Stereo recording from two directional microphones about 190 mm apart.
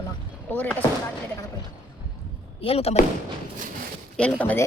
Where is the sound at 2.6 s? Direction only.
30° left (ahead or behind).